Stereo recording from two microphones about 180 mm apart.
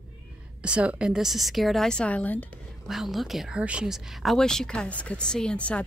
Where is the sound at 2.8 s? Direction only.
Centre (ahead or behind).